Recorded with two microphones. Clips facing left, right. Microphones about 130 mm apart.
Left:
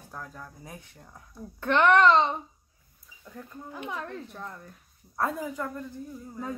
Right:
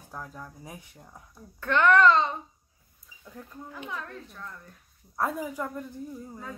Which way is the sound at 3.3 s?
5° right (ahead or behind).